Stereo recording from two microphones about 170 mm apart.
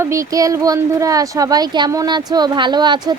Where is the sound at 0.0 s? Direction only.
20° right (ahead or behind).